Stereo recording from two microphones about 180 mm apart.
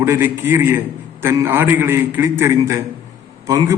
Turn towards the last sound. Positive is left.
turn(degrees=-20)  # may be behind; listen again after turning